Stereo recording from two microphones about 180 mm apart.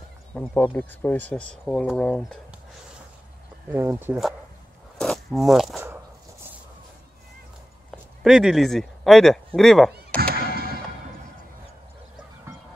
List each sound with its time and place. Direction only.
0.3 s speech: 10° left (ahead or behind)
3.7 s speech: 10° right (ahead or behind)
4.9 s speech: centre (ahead or behind)
8.2 s speech: centre (ahead or behind)
9.9 s music: 60° right (ahead or behind)